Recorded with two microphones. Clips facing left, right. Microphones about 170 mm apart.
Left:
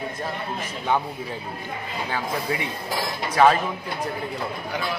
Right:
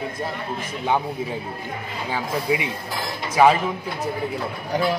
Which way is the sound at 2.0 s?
10° right (ahead or behind).